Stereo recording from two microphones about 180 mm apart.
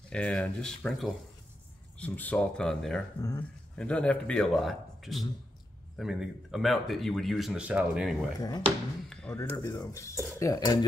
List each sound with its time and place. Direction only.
0.1 s speech: 5° left (ahead or behind)
3.2 s speech: 15° left (ahead or behind); by 8.3 s centre (ahead or behind)
8.4 s speech: 20° left (ahead or behind)
9.1 s speech: 10° left (ahead or behind)